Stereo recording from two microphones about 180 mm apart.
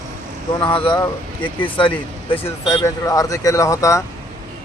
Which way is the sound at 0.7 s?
30° left (ahead or behind).